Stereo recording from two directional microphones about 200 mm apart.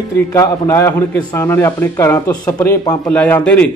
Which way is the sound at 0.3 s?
15° left (ahead or behind).